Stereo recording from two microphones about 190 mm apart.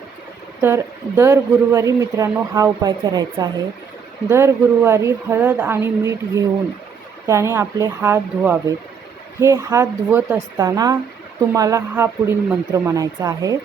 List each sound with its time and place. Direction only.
0.6 s speech: 15° right (ahead or behind)